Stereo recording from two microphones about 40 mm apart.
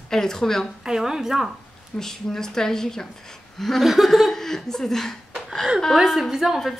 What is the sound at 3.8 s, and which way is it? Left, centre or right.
Laughter, centre.